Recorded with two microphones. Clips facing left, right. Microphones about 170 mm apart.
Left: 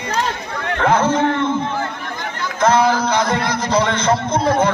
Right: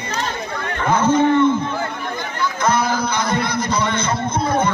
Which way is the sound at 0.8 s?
85° left.